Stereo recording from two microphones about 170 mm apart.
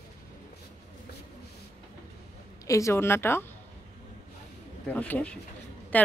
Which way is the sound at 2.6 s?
20° left (ahead or behind).